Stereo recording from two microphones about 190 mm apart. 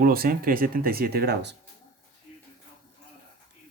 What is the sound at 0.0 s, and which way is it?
Speech, 50° right (ahead or behind).